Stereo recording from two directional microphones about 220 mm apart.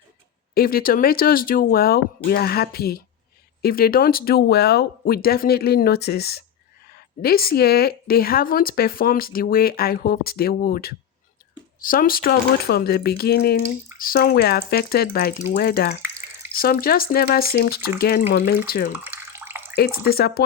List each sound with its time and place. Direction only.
0.5 s speech: 40° left (ahead or behind)
19.0 s bathtub: 10° right (ahead or behind)
20.1 s speech: 45° left (ahead or behind)